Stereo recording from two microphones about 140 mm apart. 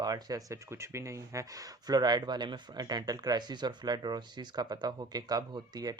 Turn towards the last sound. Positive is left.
turn(degrees=-25)  # may be behind; listen again after turning